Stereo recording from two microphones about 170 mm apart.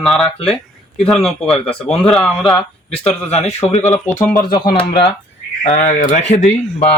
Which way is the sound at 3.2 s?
40° left (ahead or behind).